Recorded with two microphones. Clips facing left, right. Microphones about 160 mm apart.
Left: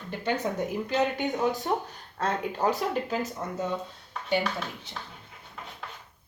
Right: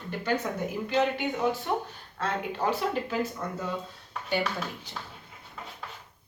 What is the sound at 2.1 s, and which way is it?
Speech, 40° left (ahead or behind).